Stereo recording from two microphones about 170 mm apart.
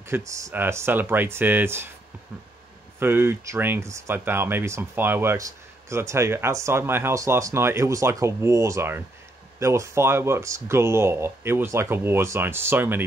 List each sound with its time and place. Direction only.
0.0 s speech: 15° right (ahead or behind)
3.0 s speech: 15° right (ahead or behind)